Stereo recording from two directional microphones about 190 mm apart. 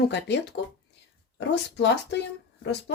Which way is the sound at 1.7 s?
65° left (ahead or behind).